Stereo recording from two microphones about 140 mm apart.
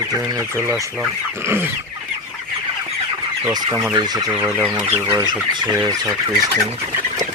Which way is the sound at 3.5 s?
25° right (ahead or behind).